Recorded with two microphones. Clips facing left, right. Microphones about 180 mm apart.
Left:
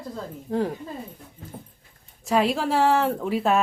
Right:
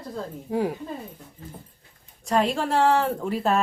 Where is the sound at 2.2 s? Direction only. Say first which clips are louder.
Left 1 dB; centre (ahead or behind).